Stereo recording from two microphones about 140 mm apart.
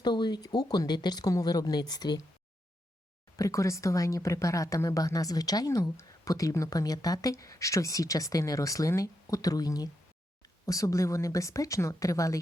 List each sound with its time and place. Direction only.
0.0 s speech: 30° left (ahead or behind)
3.3 s speech: 20° left (ahead or behind)